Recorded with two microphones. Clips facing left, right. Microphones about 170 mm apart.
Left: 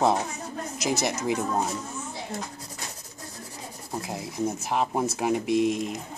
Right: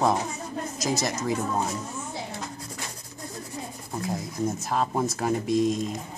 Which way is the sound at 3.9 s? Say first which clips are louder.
Right 1 dB; 10° left (ahead or behind).